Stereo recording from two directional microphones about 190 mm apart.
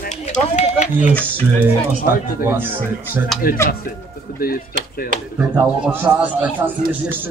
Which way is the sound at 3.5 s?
50° left (ahead or behind).